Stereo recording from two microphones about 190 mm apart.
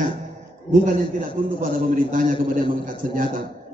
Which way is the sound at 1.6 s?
45° right (ahead or behind).